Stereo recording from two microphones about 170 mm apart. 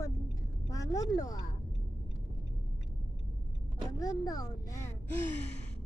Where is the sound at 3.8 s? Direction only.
20° left (ahead or behind).